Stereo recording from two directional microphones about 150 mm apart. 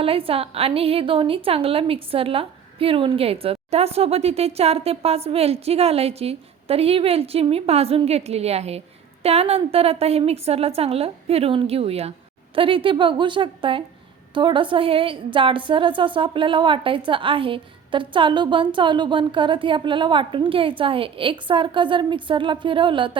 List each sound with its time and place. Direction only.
0.0 s a woman's voice: 40° right (ahead or behind)